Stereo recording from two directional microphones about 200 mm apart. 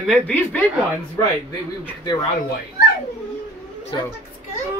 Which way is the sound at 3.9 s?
20° left (ahead or behind).